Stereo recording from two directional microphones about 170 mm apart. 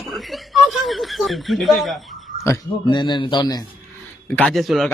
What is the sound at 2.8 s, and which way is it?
Speech, 25° left (ahead or behind).